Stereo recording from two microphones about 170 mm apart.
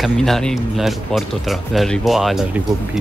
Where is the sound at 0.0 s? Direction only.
Centre (ahead or behind).